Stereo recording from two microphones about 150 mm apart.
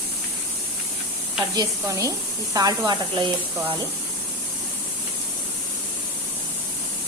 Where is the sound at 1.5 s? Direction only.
25° right (ahead or behind).